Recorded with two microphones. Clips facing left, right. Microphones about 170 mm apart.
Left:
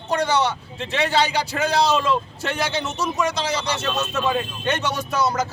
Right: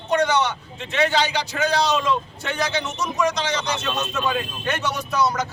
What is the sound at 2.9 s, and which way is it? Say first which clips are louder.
Speech: right 1 dB; 5° left (ahead or behind).